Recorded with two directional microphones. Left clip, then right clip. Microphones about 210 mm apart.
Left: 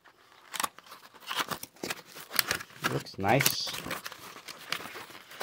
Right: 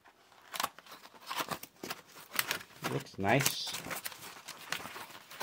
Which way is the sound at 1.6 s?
35° left (ahead or behind).